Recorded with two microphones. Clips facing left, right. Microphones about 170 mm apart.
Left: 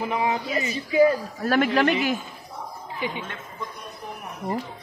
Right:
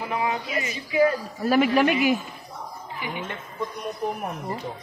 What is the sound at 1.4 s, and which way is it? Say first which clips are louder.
Speech: right 2 dB; 5° right (ahead or behind).